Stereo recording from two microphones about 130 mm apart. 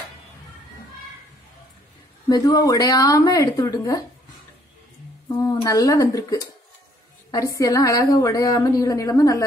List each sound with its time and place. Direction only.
2.2 s a woman's voice: 25° left (ahead or behind)
5.4 s a woman's voice: 30° left (ahead or behind)
7.2 s a woman's voice: 25° left (ahead or behind)